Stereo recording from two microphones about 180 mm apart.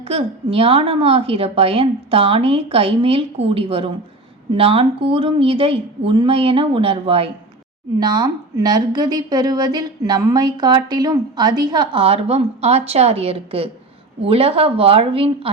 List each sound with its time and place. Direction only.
0.0 s a woman's voice: 35° right (ahead or behind)